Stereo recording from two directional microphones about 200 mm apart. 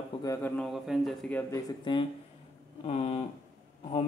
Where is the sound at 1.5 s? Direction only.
20° left (ahead or behind).